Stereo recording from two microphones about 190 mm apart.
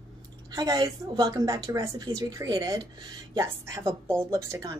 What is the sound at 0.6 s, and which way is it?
Speech, 20° right (ahead or behind).